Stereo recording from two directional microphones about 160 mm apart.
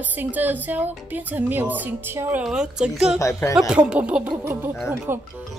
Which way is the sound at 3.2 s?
20° left (ahead or behind).